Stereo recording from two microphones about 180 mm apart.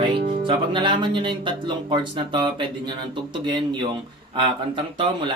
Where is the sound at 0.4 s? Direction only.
30° right (ahead or behind).